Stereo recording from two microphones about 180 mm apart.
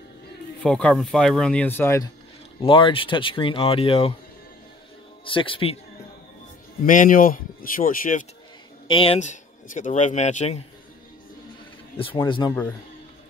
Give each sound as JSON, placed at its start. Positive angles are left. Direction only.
{"t": 0.6, "sound": "speech", "side_deg": 5}
{"t": 2.6, "sound": "speech", "side_deg": 30}
{"t": 5.2, "sound": "speech", "side_deg": 30}
{"t": 6.9, "sound": "speech", "side_deg": 50}
{"t": 8.8, "sound": "speech", "side_deg": 30}
{"t": 12.2, "sound": "speech", "side_deg": 25}